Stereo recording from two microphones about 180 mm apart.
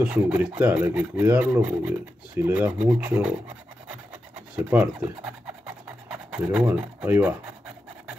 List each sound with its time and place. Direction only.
0.0 s speech: 10° right (ahead or behind)
4.6 s speech: 10° right (ahead or behind)
6.6 s filing: 5° right (ahead or behind)